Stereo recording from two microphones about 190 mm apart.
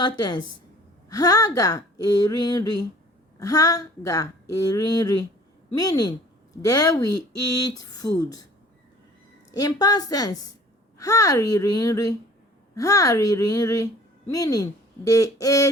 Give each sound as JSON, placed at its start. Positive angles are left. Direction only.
{"t": 0.0, "sound": "speech", "side_deg": 20}
{"t": 9.5, "sound": "speech", "side_deg": 20}